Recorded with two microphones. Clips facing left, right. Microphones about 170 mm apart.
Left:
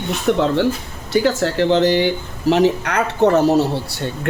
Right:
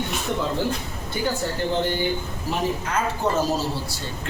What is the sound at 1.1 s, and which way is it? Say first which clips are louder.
Speech: left 9 dB; 90° left.